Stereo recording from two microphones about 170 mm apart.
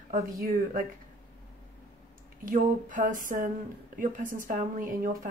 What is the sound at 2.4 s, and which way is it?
Speech, 50° right (ahead or behind).